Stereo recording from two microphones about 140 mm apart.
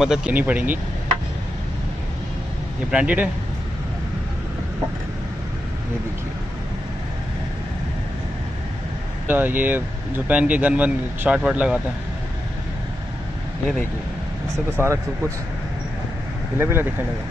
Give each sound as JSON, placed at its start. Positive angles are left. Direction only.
{"t": 0.0, "sound": "speech", "side_deg": -5}
{"t": 2.9, "sound": "speech", "side_deg": -10}
{"t": 9.3, "sound": "speech", "side_deg": -15}
{"t": 14.8, "sound": "speech", "side_deg": -20}
{"t": 16.5, "sound": "speech", "side_deg": -15}